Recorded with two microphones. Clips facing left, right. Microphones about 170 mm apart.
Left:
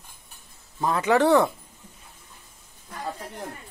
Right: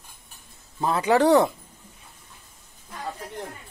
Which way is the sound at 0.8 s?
30° right (ahead or behind).